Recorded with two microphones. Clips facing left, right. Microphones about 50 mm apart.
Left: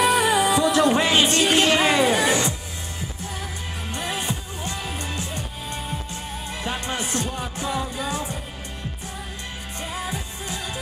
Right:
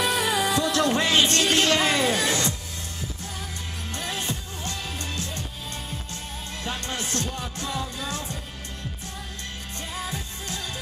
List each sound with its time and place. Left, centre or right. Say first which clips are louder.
0.0 s music: left 5 dB; left
3.9 s music: left 3 dB; left
6.6 s music: left 3 dB; left
9.9 s music: left 2 dB; centre